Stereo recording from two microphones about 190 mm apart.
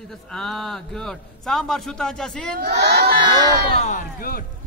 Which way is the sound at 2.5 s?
55° right (ahead or behind).